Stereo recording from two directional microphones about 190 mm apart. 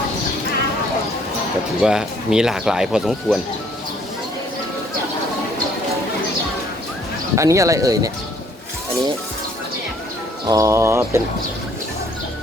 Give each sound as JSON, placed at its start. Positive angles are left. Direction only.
{"t": 1.8, "sound": "speech", "side_deg": -5}
{"t": 7.3, "sound": "speech", "side_deg": -15}
{"t": 10.4, "sound": "speech", "side_deg": -15}